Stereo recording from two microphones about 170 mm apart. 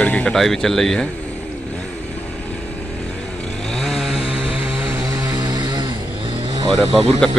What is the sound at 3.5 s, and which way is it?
Chainsaw, 5° left (ahead or behind).